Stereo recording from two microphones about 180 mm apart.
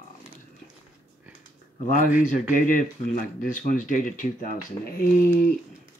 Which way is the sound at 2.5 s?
45° left (ahead or behind).